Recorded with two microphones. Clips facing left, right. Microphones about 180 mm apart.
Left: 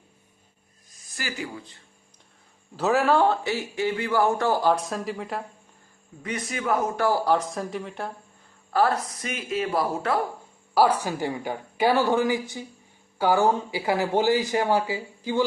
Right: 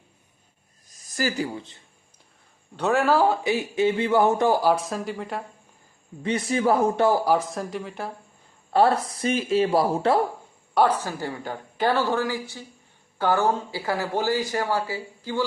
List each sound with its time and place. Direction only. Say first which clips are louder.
1.1 s speech: right 7 dB; 40° right (ahead or behind)
1.5 s speech: right 3 dB; 25° right (ahead or behind)
2.7 s speech: even; centre (ahead or behind)
3.4 s speech: right 4 dB; 20° right (ahead or behind); by 5.4 s centre (ahead or behind)
6.2 s speech: right 6 dB; 30° right (ahead or behind)
7.3 s speech: right 1 dB; 5° right (ahead or behind)
8.7 s speech: right 3 dB; 30° right (ahead or behind)
10.8 s speech: left 1 dB; 10° left (ahead or behind)